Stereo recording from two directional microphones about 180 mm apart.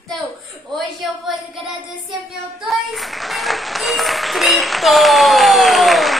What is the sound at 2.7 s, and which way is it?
Applause, centre (ahead or behind).